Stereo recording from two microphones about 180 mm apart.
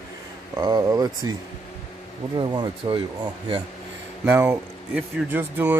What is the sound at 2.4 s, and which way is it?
Speech, 25° right (ahead or behind).